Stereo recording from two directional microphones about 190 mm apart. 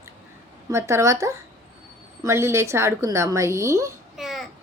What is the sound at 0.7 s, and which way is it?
A woman's voice, 15° right (ahead or behind).